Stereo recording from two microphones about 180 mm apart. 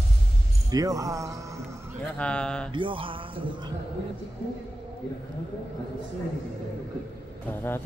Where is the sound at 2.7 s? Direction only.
30° right (ahead or behind).